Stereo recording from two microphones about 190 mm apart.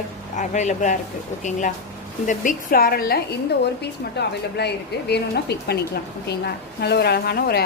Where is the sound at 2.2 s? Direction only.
45° left (ahead or behind).